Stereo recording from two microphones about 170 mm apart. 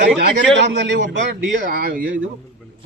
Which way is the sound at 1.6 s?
55° right (ahead or behind).